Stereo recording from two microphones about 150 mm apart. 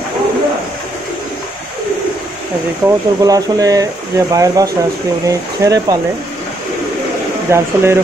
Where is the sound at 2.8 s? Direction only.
25° right (ahead or behind).